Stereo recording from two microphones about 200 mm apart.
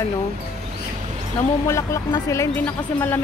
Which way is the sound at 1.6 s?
15° left (ahead or behind).